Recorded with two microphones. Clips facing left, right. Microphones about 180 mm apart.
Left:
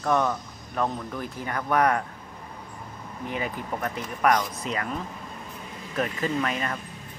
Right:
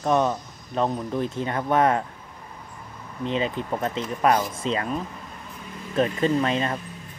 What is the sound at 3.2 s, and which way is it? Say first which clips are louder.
Speech: right 6 dB; 25° right (ahead or behind).